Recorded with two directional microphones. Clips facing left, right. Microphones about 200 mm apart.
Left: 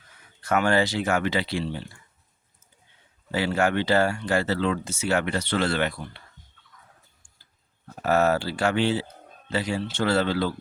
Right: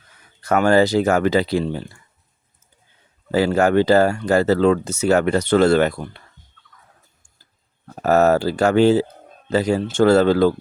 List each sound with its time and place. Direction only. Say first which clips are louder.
0.4 s speech: right 7 dB; 40° right (ahead or behind)
3.3 s speech: right 8 dB; 40° right (ahead or behind)
8.0 s speech: right 7 dB; 40° right (ahead or behind)